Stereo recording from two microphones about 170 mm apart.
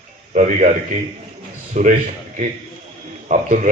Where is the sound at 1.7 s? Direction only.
45° right (ahead or behind).